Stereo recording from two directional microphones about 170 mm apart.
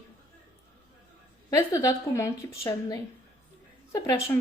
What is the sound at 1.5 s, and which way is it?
A woman's voice, 20° left (ahead or behind).